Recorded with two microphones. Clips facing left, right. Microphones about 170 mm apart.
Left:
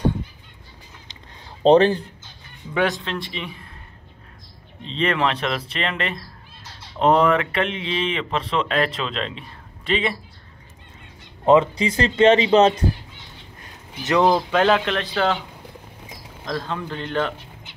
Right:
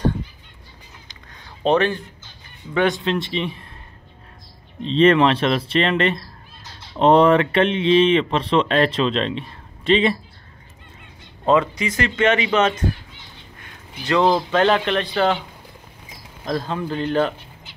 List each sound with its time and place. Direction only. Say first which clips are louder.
1.6 s speech: left 4 dB; 35° left (ahead or behind)
2.7 s speech: right 2 dB; 5° left (ahead or behind)
3.1 s speech: right 7 dB; 20° right (ahead or behind)
4.8 s speech: right 8 dB; 25° right (ahead or behind)
11.4 s speech: left 2 dB; 20° left (ahead or behind)
14.0 s speech: even; 15° left (ahead or behind)
16.4 s speech: right 3 dB; 10° right (ahead or behind)